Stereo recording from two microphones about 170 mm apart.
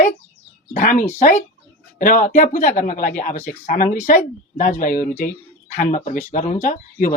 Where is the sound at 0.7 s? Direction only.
50° left (ahead or behind).